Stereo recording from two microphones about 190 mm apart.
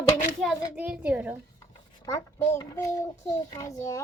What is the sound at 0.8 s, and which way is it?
Speech, 5° right (ahead or behind).